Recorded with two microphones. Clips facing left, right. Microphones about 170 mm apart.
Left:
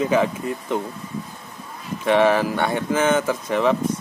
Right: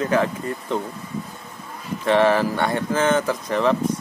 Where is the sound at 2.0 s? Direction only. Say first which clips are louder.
Even; 15° left (ahead or behind).